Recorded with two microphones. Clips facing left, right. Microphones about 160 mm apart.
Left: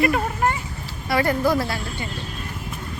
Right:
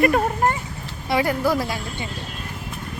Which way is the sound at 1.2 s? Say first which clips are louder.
Left 3 dB; 10° right (ahead or behind).